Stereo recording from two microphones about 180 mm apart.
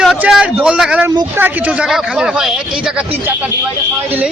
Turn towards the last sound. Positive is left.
turn(degrees=-5)  # may be behind; listen again after turning